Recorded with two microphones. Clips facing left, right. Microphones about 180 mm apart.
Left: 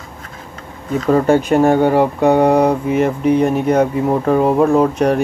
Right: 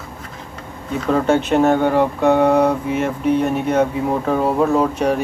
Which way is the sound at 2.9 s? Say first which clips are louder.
Left 4 dB; 55° left (ahead or behind).